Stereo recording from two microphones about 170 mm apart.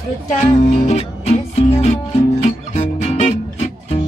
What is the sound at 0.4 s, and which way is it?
Music, 40° left (ahead or behind).